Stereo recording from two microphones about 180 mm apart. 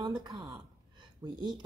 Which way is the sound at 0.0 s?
25° right (ahead or behind).